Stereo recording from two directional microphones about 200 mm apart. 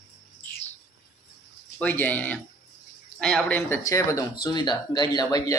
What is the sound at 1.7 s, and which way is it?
Speech, 10° left (ahead or behind).